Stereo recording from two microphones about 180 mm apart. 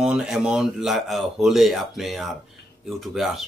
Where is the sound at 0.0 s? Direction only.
5° right (ahead or behind).